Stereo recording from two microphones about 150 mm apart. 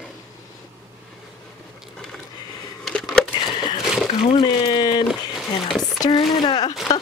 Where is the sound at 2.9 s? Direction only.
5° left (ahead or behind).